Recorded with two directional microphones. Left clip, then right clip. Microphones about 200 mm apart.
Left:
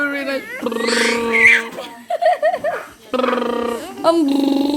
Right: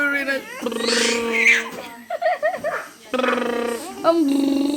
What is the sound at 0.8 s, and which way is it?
Wild animals, 5° right (ahead or behind).